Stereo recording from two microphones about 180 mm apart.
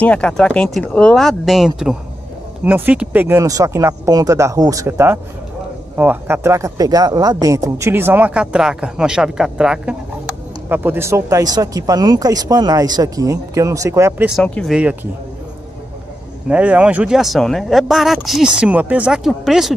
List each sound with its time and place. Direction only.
0.0 s speech: 5° left (ahead or behind)
14.4 s speech: 5° left (ahead or behind)
16.4 s speech: 10° right (ahead or behind)